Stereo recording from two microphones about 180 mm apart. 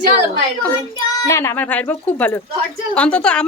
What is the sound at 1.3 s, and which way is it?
A woman's voice, 15° left (ahead or behind).